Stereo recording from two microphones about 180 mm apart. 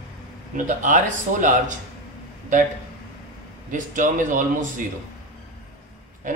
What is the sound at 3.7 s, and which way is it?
Speech, 45° right (ahead or behind).